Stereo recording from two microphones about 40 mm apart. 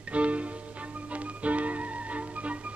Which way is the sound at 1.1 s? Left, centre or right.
Right.